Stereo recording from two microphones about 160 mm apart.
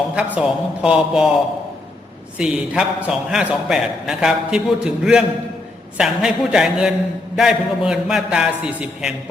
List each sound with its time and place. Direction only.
0.2 s a man's voice: 5° right (ahead or behind)
2.4 s a man's voice: 5° right (ahead or behind)